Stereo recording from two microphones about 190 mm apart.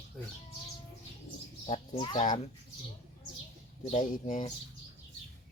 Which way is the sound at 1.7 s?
25° left (ahead or behind).